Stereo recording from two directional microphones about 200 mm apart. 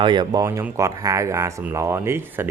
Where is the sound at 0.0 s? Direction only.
20° right (ahead or behind).